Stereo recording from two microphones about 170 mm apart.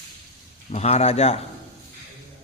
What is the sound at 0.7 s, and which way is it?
Speech, 40° left (ahead or behind).